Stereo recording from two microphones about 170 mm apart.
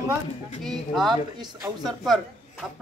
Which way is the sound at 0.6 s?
Centre (ahead or behind).